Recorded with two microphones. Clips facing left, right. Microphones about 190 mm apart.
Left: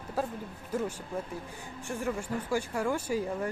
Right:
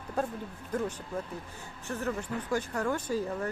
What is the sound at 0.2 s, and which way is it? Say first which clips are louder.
Speech: right 1 dB; 5° left (ahead or behind).